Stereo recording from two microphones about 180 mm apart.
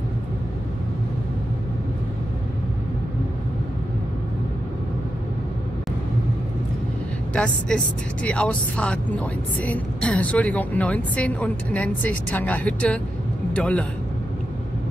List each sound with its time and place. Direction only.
7.3 s a man's voice: 5° left (ahead or behind)